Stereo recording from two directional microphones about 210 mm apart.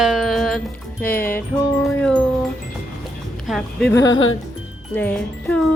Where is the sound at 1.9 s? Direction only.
5° left (ahead or behind).